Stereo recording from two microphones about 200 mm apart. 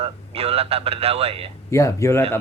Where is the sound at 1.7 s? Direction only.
15° left (ahead or behind).